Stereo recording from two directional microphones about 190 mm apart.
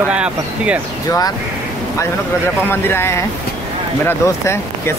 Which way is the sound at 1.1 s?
20° left (ahead or behind).